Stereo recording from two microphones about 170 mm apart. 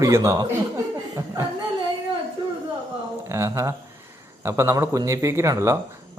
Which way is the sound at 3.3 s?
15° right (ahead or behind).